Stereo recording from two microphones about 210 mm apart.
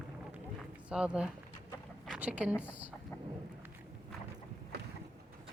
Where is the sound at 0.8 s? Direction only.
5° right (ahead or behind).